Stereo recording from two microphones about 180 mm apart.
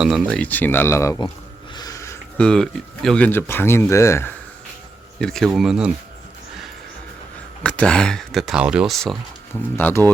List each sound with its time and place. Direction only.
0.0 s speech: centre (ahead or behind); by 1.2 s 15° left (ahead or behind)
1.7 s a sound: 20° left (ahead or behind)
2.4 s speech: 5° left (ahead or behind)
5.2 s speech: centre (ahead or behind)
7.6 s speech: 5° left (ahead or behind)
9.7 s speech: 10° left (ahead or behind)